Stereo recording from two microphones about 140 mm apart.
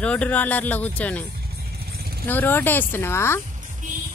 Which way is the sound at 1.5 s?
90° right.